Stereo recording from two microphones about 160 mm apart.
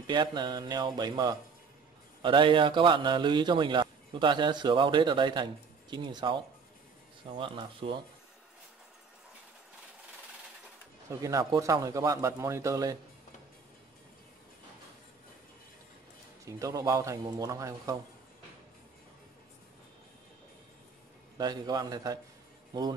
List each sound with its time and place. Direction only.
0.0 s a man's voice: 25° right (ahead or behind)
11.1 s a man's voice: 20° right (ahead or behind)
16.4 s a man's voice: 20° right (ahead or behind)
21.4 s a man's voice: 25° right (ahead or behind)